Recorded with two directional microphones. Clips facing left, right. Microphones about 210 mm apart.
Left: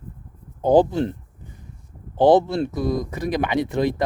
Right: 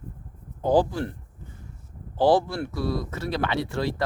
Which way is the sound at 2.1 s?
20° left (ahead or behind).